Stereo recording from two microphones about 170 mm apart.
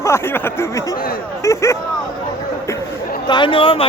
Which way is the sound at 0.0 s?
15° left (ahead or behind).